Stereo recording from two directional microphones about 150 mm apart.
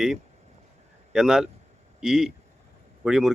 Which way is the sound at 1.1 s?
5° right (ahead or behind).